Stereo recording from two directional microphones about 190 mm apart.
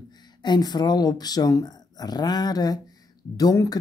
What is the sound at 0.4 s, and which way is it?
Speech, 20° left (ahead or behind).